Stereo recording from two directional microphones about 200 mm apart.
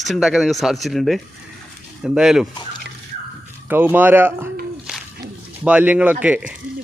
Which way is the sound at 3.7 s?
10° right (ahead or behind).